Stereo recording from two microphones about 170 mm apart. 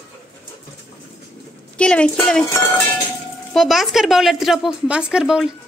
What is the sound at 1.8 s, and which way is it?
Speech, 5° left (ahead or behind).